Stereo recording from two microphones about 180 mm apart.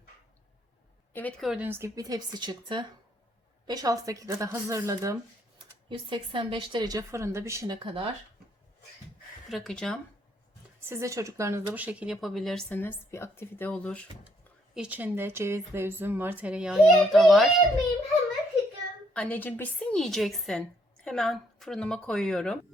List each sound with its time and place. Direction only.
1.1 s speech: 10° left (ahead or behind)
1.5 s a woman's voice: 10° right (ahead or behind)
5.9 s a woman's voice: 25° right (ahead or behind)
9.5 s a woman's voice: centre (ahead or behind)
10.8 s a woman's voice: 15° right (ahead or behind); by 14.1 s 5° left (ahead or behind)
14.8 s speech: 10° right (ahead or behind)
19.1 s a woman's voice: 10° left (ahead or behind)